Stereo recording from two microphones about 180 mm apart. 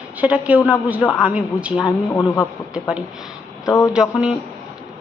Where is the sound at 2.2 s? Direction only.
25° left (ahead or behind).